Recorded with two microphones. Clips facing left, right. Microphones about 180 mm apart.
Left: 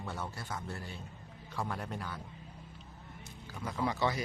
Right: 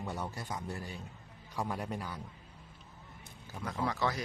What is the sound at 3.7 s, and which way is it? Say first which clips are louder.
Speech: left 1 dB; centre (ahead or behind).